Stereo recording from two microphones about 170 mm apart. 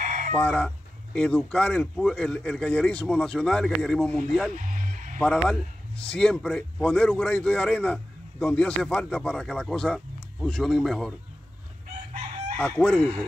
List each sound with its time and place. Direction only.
0.0 s chicken: 50° right (ahead or behind)
0.3 s speech: 5° left (ahead or behind)
4.6 s music: 50° right (ahead or behind)
5.2 s speech: 5° left (ahead or behind)
12.5 s chicken: 5° left (ahead or behind)